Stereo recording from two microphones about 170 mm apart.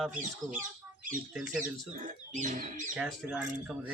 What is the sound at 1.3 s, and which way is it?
Speech, 5° right (ahead or behind).